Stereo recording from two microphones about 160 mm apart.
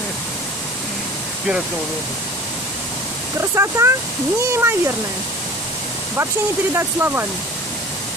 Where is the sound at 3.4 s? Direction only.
15° right (ahead or behind).